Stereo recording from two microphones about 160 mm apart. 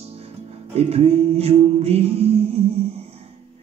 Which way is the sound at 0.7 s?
40° right (ahead or behind).